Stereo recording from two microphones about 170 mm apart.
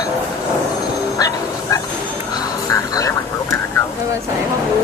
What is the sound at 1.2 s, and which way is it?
Bow-wow, 20° left (ahead or behind).